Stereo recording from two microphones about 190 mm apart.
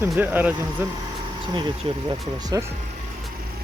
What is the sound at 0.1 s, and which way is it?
Speech, 10° right (ahead or behind).